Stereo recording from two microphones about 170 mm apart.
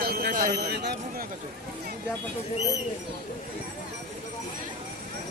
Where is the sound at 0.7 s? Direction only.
75° right (ahead or behind).